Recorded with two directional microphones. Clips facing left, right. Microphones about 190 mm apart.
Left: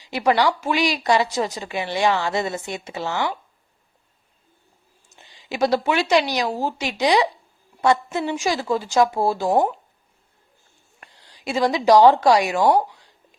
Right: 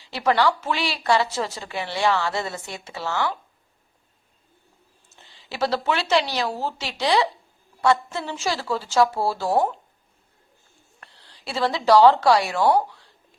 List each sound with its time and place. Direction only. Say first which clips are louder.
0.0 s a woman's voice: left 2 dB; 15° left (ahead or behind)
5.0 s a woman's voice: left 6 dB; 15° left (ahead or behind)
9.6 s speech: left 2 dB; centre (ahead or behind)
11.0 s a woman's voice: left 6 dB; 15° left (ahead or behind)